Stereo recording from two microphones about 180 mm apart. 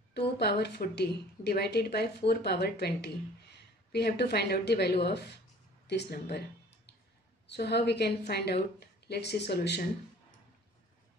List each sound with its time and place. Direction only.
0.4 s a woman's voice: 65° left (ahead or behind)
7.4 s speech: 65° left (ahead or behind)